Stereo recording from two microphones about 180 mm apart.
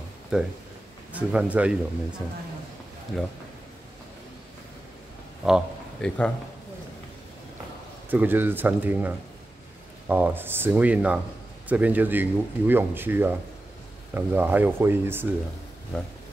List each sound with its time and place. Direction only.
0.3 s speech: 5° right (ahead or behind)
3.1 s speech: 5° left (ahead or behind)
5.4 s a man's voice: centre (ahead or behind)
8.1 s speech: 10° right (ahead or behind)